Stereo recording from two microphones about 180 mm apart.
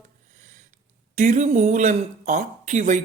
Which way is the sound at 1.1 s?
45° right (ahead or behind).